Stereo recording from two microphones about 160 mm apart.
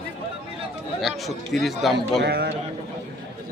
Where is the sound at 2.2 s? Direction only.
90° right.